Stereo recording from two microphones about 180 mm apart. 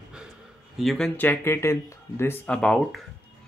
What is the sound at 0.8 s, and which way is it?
Speech, centre (ahead or behind).